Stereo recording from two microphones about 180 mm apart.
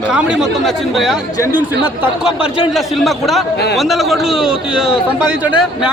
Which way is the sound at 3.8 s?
Centre (ahead or behind).